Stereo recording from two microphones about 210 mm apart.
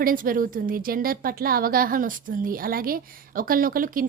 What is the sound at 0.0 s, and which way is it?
A woman's voice, 40° right (ahead or behind).